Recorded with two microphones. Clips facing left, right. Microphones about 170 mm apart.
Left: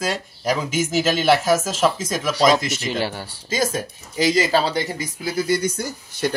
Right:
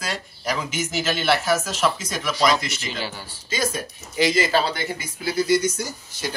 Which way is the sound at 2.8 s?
60° left (ahead or behind).